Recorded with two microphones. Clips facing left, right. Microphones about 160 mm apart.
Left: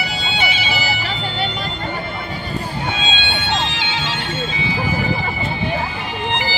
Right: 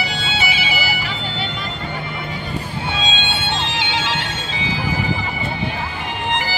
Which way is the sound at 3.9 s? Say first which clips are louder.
Even; 85° right.